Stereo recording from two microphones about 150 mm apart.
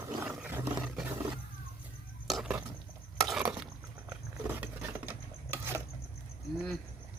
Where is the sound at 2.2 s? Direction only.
Centre (ahead or behind).